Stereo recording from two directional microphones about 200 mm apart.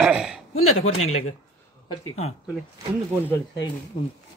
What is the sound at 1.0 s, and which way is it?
Speech, 90° left.